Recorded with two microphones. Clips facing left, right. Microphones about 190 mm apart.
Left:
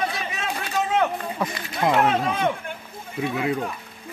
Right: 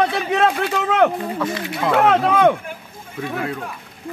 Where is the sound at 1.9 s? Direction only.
65° right (ahead or behind).